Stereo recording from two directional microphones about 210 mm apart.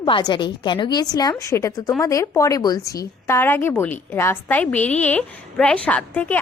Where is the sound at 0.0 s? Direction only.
20° left (ahead or behind).